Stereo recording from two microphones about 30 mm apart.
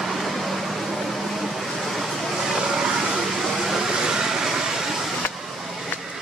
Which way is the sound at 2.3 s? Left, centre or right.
Right.